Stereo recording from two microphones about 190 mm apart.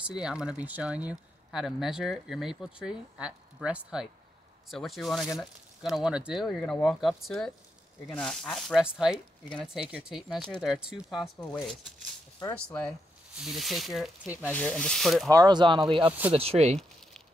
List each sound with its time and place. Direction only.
0.0 s speech: 5° right (ahead or behind)
14.5 s speech: 5° left (ahead or behind)
15.2 s speech: 20° right (ahead or behind)
16.1 s speech: 10° right (ahead or behind)
16.3 s speech: 30° right (ahead or behind)